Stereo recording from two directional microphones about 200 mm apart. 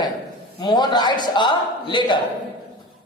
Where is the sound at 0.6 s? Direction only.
20° left (ahead or behind).